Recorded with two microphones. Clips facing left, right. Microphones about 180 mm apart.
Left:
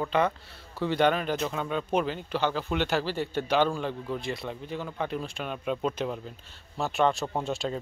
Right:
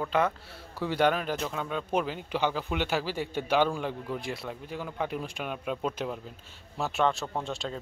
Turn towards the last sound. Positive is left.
turn(degrees=5)  # may be behind; listen again after turning